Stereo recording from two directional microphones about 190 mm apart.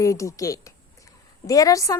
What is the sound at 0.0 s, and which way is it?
A woman's voice, 15° left (ahead or behind).